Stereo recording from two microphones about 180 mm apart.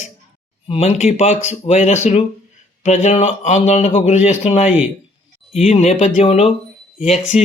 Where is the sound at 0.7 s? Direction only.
35° left (ahead or behind).